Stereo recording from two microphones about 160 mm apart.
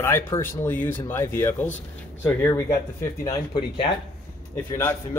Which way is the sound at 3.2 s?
30° left (ahead or behind).